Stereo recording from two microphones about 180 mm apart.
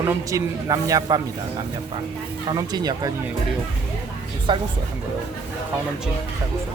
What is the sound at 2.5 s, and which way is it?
Speech, 20° right (ahead or behind).